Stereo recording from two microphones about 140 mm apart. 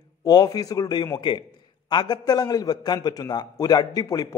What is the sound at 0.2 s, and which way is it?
A man's voice, 30° left (ahead or behind).